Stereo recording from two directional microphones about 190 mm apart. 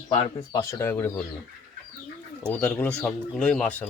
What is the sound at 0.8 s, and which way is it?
Speech, 10° left (ahead or behind).